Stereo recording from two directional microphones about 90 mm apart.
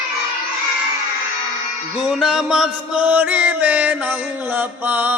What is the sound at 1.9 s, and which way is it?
Chant, 10° right (ahead or behind).